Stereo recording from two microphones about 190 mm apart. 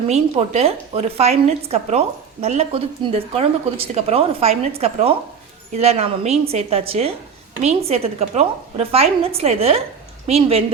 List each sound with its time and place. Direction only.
0.1 s a woman's voice: 35° right (ahead or behind)